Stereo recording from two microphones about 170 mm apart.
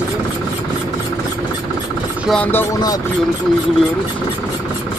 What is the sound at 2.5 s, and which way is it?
Speech, 15° left (ahead or behind).